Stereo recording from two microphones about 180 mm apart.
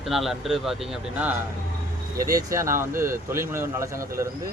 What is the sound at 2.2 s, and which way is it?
A man's voice, 20° right (ahead or behind).